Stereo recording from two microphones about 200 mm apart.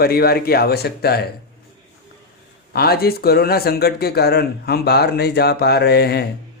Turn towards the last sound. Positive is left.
turn(degrees=55)  # may be behind; listen again after turning